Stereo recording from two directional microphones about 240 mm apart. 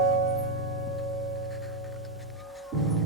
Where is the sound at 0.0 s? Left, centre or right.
Centre.